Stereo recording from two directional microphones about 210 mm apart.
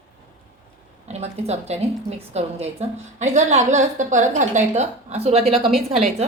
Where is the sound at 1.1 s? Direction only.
30° right (ahead or behind).